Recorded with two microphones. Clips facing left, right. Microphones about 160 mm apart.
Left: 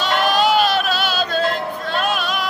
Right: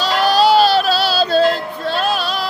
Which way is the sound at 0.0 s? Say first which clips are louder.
Right 3 dB; 35° right (ahead or behind).